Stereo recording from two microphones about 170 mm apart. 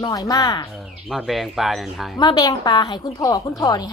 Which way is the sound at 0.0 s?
20° left (ahead or behind).